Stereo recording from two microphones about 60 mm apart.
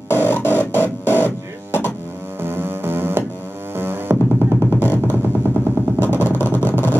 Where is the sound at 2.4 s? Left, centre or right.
Right.